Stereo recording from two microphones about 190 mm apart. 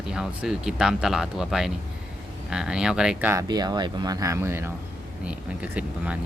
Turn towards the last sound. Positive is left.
turn(degrees=-5)  # may be behind; listen again after turning